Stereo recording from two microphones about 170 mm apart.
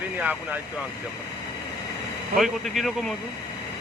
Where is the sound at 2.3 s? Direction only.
Centre (ahead or behind).